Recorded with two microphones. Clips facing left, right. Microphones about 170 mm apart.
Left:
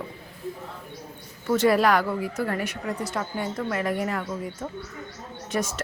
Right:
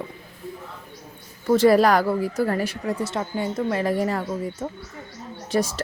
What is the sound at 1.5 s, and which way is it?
A woman's voice, 35° right (ahead or behind).